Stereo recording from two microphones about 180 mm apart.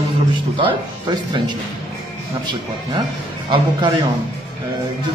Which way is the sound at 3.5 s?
25° right (ahead or behind).